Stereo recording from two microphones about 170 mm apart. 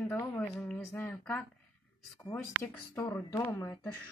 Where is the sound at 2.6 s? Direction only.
15° left (ahead or behind).